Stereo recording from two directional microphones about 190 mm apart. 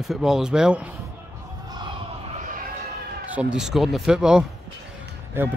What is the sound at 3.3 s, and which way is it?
Speech, 5° right (ahead or behind).